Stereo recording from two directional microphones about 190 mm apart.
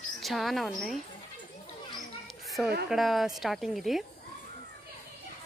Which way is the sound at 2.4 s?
Centre (ahead or behind).